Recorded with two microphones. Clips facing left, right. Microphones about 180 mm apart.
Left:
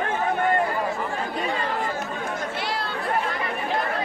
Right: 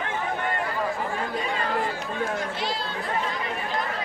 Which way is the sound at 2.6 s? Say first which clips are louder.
Left 1 dB; 65° left (ahead or behind).